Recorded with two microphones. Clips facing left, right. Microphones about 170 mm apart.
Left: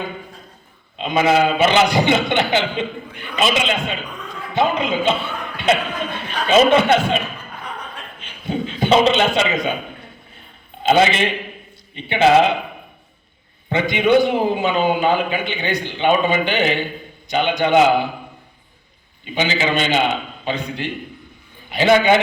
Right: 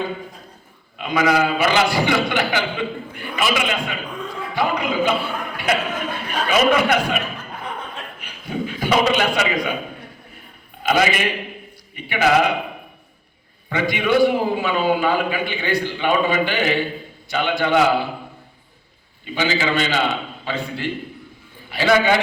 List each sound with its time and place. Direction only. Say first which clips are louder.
0.9 s a man's voice: left 2 dB; 25° left (ahead or behind)
8.2 s a man's voice: left 3 dB; 25° left (ahead or behind)
10.8 s a man's voice: left 3 dB; 25° left (ahead or behind)
13.7 s a man's voice: left 4 dB; 20° left (ahead or behind)
19.2 s a man's voice: left 1 dB; 20° left (ahead or behind)